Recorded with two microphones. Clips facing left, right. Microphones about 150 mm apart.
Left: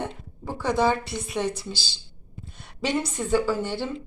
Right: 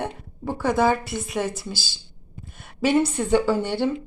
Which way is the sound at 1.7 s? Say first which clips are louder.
Right 2 dB; 50° right (ahead or behind).